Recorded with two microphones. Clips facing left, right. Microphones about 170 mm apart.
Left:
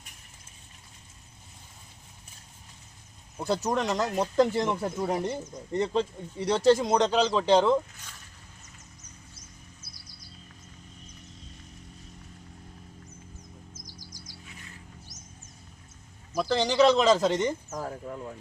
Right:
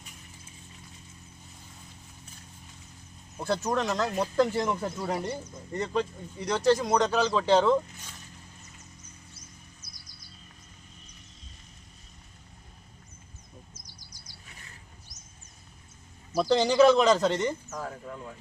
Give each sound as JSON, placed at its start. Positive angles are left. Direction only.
{"t": 3.3, "sound": "speech", "side_deg": 15}
{"t": 5.7, "sound": "speech", "side_deg": 25}
{"t": 13.7, "sound": "bird", "side_deg": 90}
{"t": 16.3, "sound": "speech", "side_deg": -10}